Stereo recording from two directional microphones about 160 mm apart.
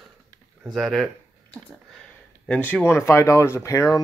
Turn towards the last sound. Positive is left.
turn(degrees=20)  # may be behind; listen again after turning